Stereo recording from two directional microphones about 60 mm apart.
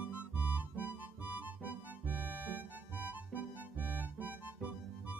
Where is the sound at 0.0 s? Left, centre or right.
Right.